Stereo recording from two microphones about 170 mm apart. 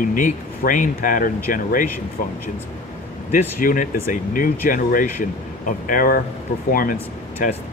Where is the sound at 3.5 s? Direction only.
55° left (ahead or behind).